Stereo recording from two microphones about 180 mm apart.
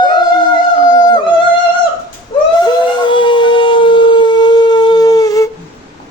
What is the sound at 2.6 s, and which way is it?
Howl, 25° left (ahead or behind).